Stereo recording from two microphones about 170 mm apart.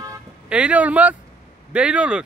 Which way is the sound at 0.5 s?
5° right (ahead or behind).